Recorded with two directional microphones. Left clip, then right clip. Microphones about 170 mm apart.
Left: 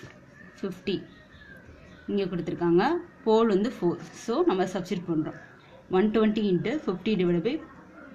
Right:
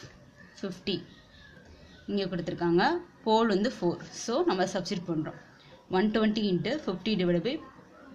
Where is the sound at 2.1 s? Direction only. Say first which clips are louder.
Left 3 dB; 15° right (ahead or behind).